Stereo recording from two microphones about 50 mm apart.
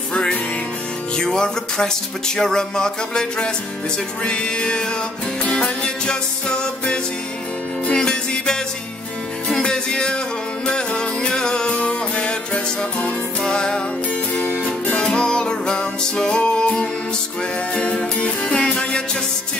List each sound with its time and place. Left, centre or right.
0.1 s music: left
9.6 s music: centre
15.0 s music: centre
17.9 s music: centre